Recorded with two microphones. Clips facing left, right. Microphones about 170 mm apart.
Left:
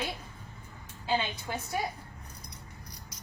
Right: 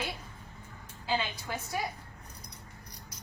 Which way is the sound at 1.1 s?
25° left (ahead or behind).